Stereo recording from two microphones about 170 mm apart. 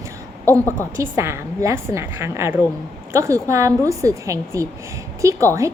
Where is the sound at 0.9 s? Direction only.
15° right (ahead or behind).